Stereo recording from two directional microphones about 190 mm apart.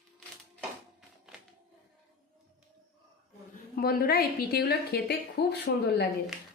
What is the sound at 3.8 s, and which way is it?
A woman's voice, 55° left (ahead or behind).